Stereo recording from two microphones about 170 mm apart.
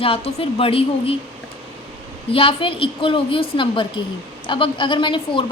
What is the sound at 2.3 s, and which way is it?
A woman's voice, 30° left (ahead or behind).